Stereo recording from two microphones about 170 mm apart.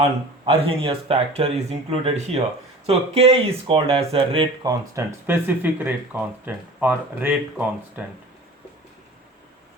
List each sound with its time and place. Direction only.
0.0 s speech: 35° right (ahead or behind); by 8.0 s 10° right (ahead or behind)